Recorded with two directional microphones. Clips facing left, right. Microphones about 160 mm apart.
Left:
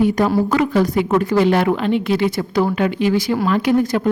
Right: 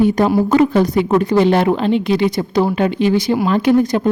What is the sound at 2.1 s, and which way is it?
Speech, 20° right (ahead or behind).